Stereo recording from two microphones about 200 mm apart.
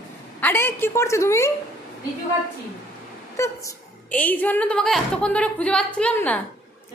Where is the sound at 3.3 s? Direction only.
15° left (ahead or behind).